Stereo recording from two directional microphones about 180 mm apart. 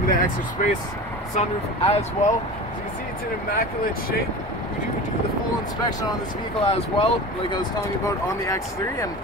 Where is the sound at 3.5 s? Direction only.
55° left (ahead or behind).